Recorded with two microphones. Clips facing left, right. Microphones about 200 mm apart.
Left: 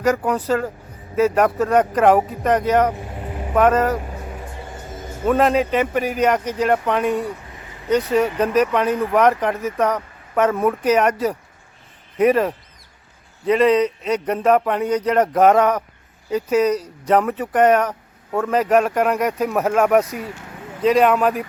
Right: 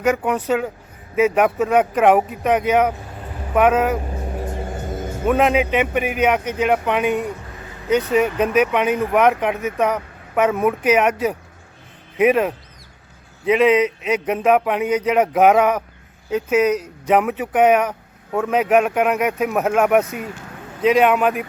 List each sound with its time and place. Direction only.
0.0 s speech: 5° right (ahead or behind)
5.2 s speech: 5° right (ahead or behind)